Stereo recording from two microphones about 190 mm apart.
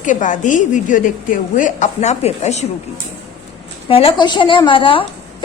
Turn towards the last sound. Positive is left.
turn(degrees=25)  # may be behind; listen again after turning